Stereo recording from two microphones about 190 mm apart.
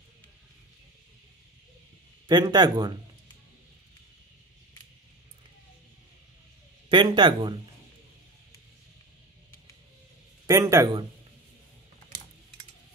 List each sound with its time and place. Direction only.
2.2 s speech: 20° right (ahead or behind)
6.9 s speech: 25° right (ahead or behind)
10.4 s speech: 15° right (ahead or behind)